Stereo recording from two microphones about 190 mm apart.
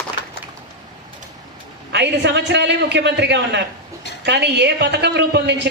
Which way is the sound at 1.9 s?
65° right (ahead or behind).